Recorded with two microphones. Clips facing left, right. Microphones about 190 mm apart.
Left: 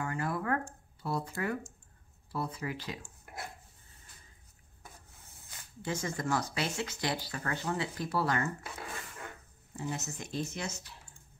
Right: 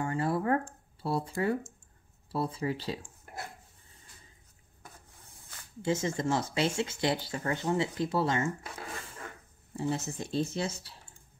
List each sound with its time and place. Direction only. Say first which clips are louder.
0.0 s a sound: right 5 dB; 30° right (ahead or behind)
1.0 s speech: right 4 dB; 30° right (ahead or behind)
5.8 s speech: right 6 dB; 25° right (ahead or behind)
9.8 s speech: right 6 dB; 30° right (ahead or behind)